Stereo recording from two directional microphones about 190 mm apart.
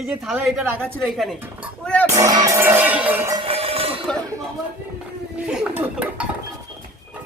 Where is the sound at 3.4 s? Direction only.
30° right (ahead or behind).